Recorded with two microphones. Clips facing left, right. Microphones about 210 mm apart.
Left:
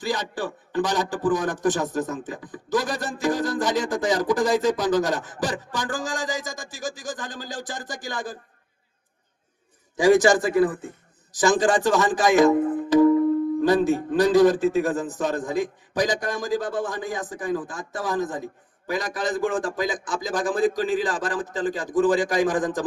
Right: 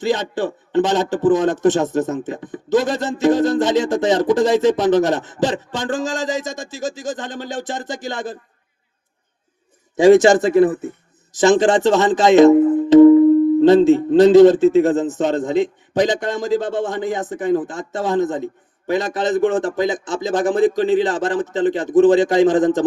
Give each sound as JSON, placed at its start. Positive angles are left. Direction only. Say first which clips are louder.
{"t": 0.0, "sound": "a man's voice", "louder": "right 8 dB", "side_deg": -25}
{"t": 9.9, "sound": "a man's voice", "louder": "right 7 dB", "side_deg": -25}